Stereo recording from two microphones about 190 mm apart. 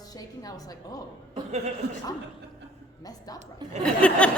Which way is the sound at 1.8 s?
60° right (ahead or behind).